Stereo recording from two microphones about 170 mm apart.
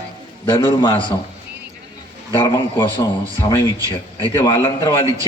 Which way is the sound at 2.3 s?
25° left (ahead or behind).